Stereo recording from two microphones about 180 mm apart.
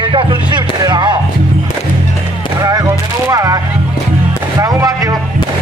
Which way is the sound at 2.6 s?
20° right (ahead or behind).